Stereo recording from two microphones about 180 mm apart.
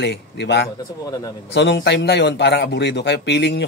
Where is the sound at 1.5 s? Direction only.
75° left (ahead or behind).